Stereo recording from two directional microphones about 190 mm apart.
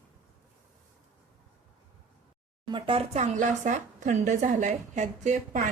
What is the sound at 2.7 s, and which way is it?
A woman's voice, 30° right (ahead or behind).